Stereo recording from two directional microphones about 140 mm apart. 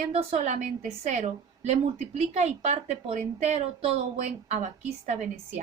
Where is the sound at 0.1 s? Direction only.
50° right (ahead or behind).